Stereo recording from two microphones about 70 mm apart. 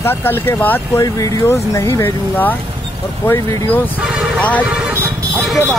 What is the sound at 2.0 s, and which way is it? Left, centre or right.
Speech, left.